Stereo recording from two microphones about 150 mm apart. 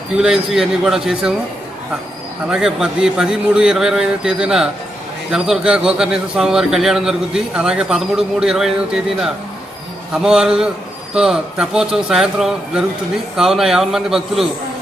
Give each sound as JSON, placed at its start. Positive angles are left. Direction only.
{"t": 0.2, "sound": "a man's voice", "side_deg": -5}
{"t": 2.5, "sound": "a man's voice", "side_deg": -5}